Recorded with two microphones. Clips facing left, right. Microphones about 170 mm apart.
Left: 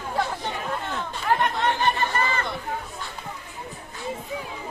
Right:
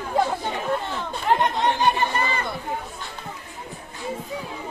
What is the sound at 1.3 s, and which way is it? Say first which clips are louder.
Chatter: right 2 dB; 20° right (ahead or behind).